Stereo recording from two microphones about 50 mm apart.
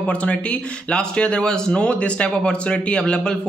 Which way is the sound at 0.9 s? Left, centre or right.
Left.